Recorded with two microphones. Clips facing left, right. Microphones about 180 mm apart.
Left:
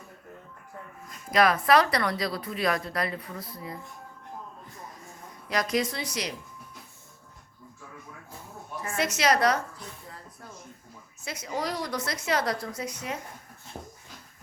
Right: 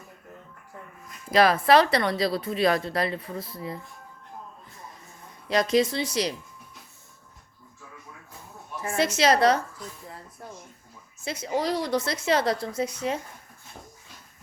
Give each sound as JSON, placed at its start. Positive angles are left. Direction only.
{"t": 1.3, "sound": "a woman's voice", "side_deg": -30}
{"t": 5.5, "sound": "a woman's voice", "side_deg": -25}
{"t": 8.8, "sound": "a woman's voice", "side_deg": -30}
{"t": 11.2, "sound": "a woman's voice", "side_deg": -30}